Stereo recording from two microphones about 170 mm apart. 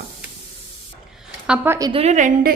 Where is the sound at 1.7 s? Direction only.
20° right (ahead or behind).